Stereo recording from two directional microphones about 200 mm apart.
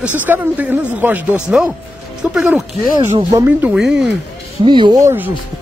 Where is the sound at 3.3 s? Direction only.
15° right (ahead or behind).